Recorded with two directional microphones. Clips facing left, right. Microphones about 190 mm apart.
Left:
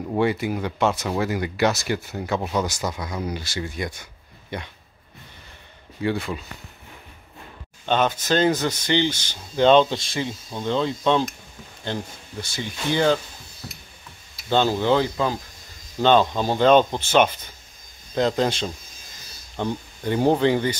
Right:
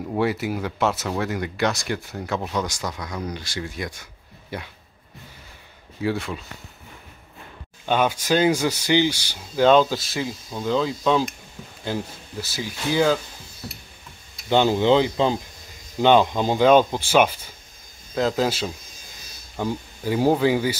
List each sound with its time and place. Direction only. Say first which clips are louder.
0.1 s speech: left 1 dB; centre (ahead or behind)
5.9 s speech: even; centre (ahead or behind)
7.8 s speech: even; 10° right (ahead or behind)
14.5 s speech: right 2 dB; 15° right (ahead or behind)